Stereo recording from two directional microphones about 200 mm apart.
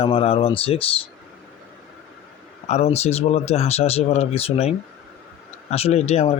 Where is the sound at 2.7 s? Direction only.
30° left (ahead or behind).